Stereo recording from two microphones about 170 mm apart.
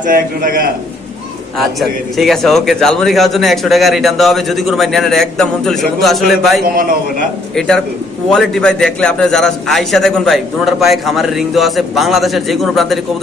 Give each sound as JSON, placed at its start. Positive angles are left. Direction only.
{"t": 0.0, "sound": "a man's voice", "side_deg": -55}
{"t": 1.8, "sound": "a man's voice", "side_deg": 0}
{"t": 6.6, "sound": "a man's voice", "side_deg": -60}
{"t": 7.5, "sound": "a man's voice", "side_deg": 5}